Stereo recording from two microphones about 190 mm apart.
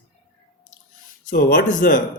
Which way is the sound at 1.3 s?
50° left (ahead or behind).